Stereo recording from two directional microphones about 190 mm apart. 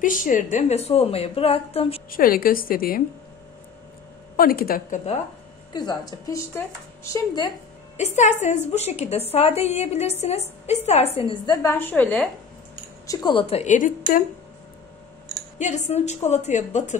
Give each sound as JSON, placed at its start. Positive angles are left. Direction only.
{"t": 0.0, "sound": "a woman's voice", "side_deg": 45}
{"t": 2.0, "sound": "a woman's voice", "side_deg": 50}
{"t": 4.4, "sound": "a woman's voice", "side_deg": 50}
{"t": 5.7, "sound": "a woman's voice", "side_deg": 20}
{"t": 8.0, "sound": "a woman's voice", "side_deg": 40}
{"t": 11.1, "sound": "a woman's voice", "side_deg": 25}
{"t": 13.0, "sound": "a woman's voice", "side_deg": 20}
{"t": 15.6, "sound": "a woman's voice", "side_deg": 35}